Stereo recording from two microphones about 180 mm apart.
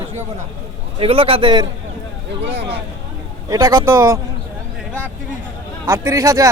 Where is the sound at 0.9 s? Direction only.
30° right (ahead or behind).